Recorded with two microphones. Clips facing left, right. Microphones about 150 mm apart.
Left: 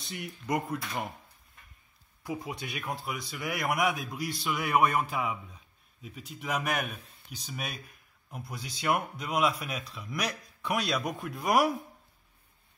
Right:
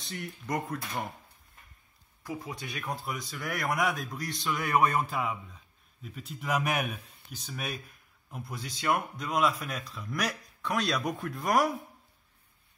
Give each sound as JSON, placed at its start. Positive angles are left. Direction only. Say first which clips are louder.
{"t": 0.5, "sound": "a man's voice", "louder": "left 2 dB", "side_deg": 10}
{"t": 2.2, "sound": "a man's voice", "louder": "left 2 dB", "side_deg": 15}
{"t": 2.9, "sound": "a man's voice", "louder": "right 1 dB", "side_deg": 0}